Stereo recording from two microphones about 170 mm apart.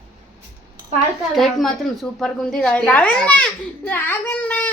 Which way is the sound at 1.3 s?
Centre (ahead or behind).